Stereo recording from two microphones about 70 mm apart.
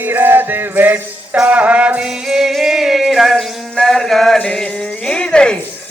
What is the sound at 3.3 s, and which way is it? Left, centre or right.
Mantra, centre.